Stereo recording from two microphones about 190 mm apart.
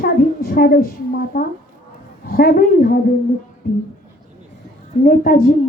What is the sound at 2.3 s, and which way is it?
Speech, 50° left (ahead or behind).